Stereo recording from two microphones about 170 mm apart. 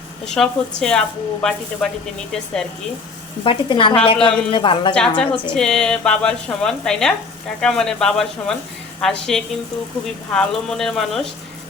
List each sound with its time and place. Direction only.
0.4 s a woman's voice: 5° left (ahead or behind)
3.4 s speech: 30° left (ahead or behind)
4.9 s a woman's voice: 5° left (ahead or behind)